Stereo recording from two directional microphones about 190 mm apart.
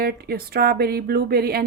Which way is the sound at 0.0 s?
55° right (ahead or behind).